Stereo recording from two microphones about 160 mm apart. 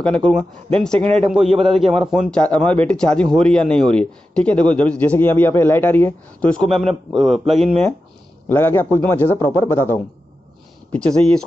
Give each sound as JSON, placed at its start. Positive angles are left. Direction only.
{"t": 0.0, "sound": "speech", "side_deg": 5}
{"t": 1.0, "sound": "a man's voice", "side_deg": -40}
{"t": 2.0, "sound": "a man's voice", "side_deg": 0}
{"t": 6.7, "sound": "a man's voice", "side_deg": -35}
{"t": 7.1, "sound": "speech", "side_deg": 0}
{"t": 8.5, "sound": "a man's voice", "side_deg": 15}